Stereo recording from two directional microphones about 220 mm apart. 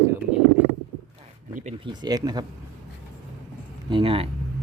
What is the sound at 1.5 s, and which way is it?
Speech, 30° right (ahead or behind).